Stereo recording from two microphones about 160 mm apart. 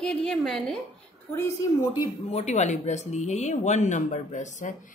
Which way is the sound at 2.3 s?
45° left (ahead or behind).